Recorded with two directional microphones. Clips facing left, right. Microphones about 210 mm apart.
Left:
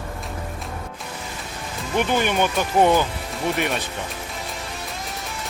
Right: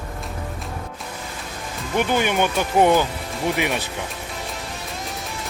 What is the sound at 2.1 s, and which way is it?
Speech, 10° right (ahead or behind).